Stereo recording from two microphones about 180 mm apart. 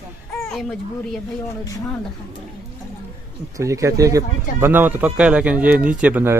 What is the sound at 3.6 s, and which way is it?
Speech, 15° right (ahead or behind).